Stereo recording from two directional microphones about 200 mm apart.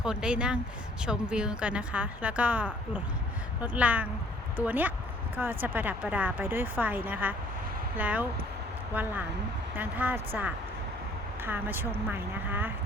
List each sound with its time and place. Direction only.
0.0 s speech: 5° right (ahead or behind)